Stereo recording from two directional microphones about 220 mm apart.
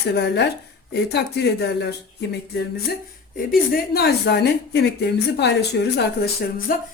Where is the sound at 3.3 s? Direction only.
45° left (ahead or behind).